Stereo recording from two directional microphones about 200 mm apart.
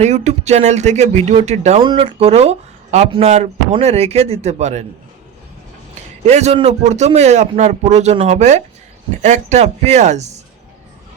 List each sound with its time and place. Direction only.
0.0 s speech: 35° right (ahead or behind)
6.2 s speech: 35° right (ahead or behind)